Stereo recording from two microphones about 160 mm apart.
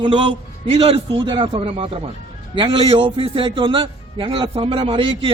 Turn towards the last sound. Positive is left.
turn(degrees=-35)  # may be behind; listen again after turning